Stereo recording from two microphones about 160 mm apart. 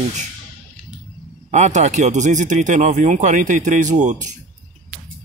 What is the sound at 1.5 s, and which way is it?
Speech, 45° right (ahead or behind).